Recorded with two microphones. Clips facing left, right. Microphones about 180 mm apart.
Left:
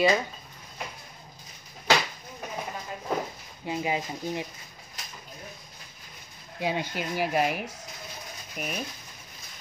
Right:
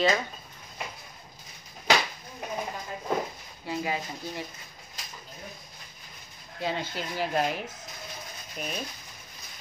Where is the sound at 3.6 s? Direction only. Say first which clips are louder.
Left 2 dB; 20° left (ahead or behind).